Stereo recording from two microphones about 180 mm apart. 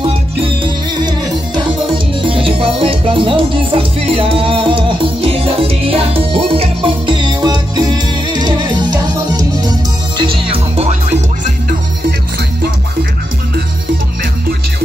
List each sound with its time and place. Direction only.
0.6 s music: 25° right (ahead or behind); by 11.2 s 40° right (ahead or behind)